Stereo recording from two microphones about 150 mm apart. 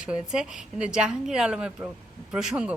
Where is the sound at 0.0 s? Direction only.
5° right (ahead or behind).